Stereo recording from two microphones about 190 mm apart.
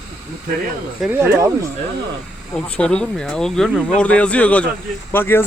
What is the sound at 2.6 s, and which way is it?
Speech, 5° left (ahead or behind).